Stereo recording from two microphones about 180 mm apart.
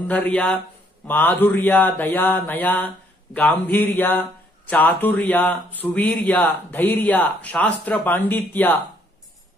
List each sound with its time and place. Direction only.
0.1 s speech: 10° left (ahead or behind)